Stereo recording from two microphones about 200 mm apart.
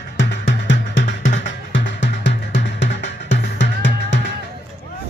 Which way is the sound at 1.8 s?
60° left (ahead or behind).